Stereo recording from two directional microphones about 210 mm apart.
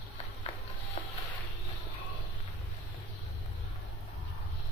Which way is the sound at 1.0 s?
25° left (ahead or behind).